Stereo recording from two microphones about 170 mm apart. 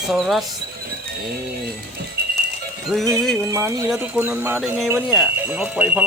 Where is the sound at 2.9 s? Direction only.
Centre (ahead or behind).